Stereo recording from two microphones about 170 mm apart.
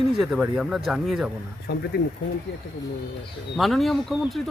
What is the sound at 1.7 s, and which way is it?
Speech, 70° left (ahead or behind).